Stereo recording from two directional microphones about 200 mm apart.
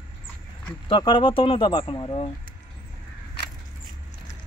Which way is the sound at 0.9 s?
25° left (ahead or behind).